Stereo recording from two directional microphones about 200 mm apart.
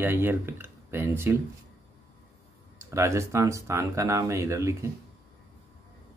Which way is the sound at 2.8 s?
15° right (ahead or behind).